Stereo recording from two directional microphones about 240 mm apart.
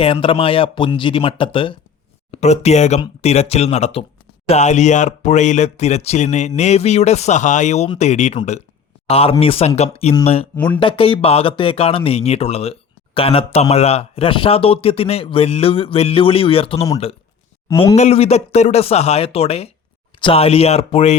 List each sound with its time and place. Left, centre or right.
0.0 s speech: left
10.5 s speech: centre